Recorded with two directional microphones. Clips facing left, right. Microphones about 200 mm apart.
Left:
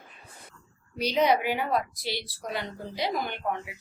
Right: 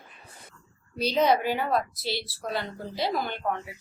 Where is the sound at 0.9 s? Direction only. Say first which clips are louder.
Right 1 dB; 15° left (ahead or behind).